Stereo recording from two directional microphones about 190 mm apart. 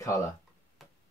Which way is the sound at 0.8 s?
Centre (ahead or behind).